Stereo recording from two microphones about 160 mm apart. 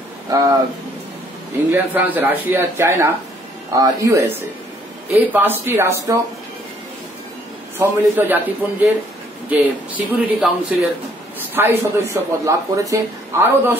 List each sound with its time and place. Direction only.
0.3 s speech: 20° right (ahead or behind)
1.7 s speech: 10° right (ahead or behind)
5.3 s speech: 10° right (ahead or behind)
7.8 s a man's voice: 10° right (ahead or behind)